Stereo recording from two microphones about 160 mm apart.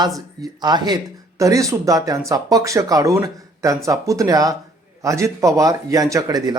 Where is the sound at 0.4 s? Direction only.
25° right (ahead or behind).